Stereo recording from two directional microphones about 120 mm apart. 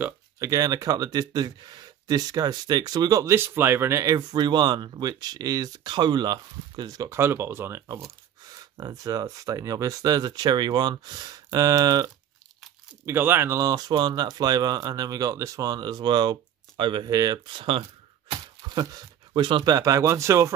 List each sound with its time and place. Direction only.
0.4 s speech: 30° right (ahead or behind)
13.0 s speech: 20° right (ahead or behind)